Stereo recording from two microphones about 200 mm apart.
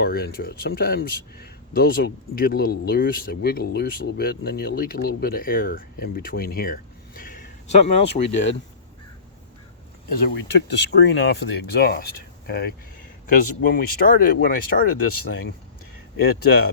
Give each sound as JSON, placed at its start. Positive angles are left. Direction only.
{"t": 0.0, "sound": "speech", "side_deg": 50}
{"t": 10.1, "sound": "speech", "side_deg": 55}
{"t": 16.1, "sound": "speech", "side_deg": 50}